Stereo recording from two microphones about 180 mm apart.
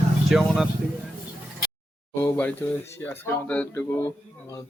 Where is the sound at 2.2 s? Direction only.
15° left (ahead or behind).